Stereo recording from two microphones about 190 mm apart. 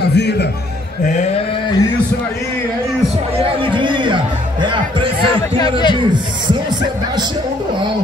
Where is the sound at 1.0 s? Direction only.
40° left (ahead or behind).